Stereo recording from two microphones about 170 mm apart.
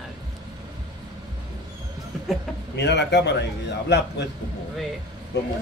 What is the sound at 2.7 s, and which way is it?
A man's voice, 90° left.